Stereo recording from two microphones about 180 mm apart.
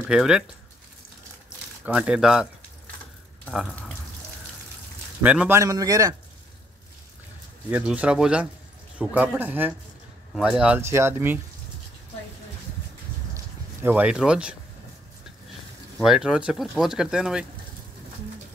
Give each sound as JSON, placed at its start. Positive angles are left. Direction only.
{"t": 0.1, "sound": "speech", "side_deg": -5}
{"t": 1.9, "sound": "speech", "side_deg": -5}
{"t": 3.4, "sound": "speech", "side_deg": 5}
{"t": 5.2, "sound": "speech", "side_deg": -5}
{"t": 5.6, "sound": "a man's voice", "side_deg": -20}
{"t": 7.7, "sound": "speech", "side_deg": -10}
{"t": 13.8, "sound": "speech", "side_deg": -5}
{"t": 16.0, "sound": "speech", "side_deg": -5}